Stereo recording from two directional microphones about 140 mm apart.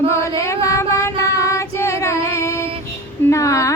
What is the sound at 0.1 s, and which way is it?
Female singing, 20° left (ahead or behind).